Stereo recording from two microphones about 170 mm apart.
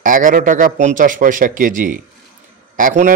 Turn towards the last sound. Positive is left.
turn(degrees=-50)  # may be behind; listen again after turning